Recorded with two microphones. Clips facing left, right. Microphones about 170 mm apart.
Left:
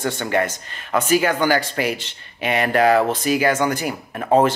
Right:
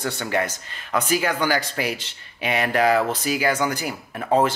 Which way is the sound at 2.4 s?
50° left (ahead or behind).